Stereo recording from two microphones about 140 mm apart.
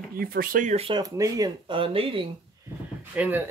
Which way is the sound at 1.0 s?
25° right (ahead or behind).